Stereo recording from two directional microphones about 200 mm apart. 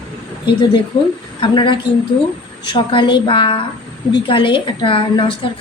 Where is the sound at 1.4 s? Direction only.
25° left (ahead or behind).